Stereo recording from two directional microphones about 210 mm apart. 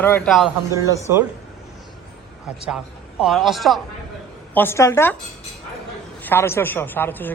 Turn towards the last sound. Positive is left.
turn(degrees=10)  # may be behind; listen again after turning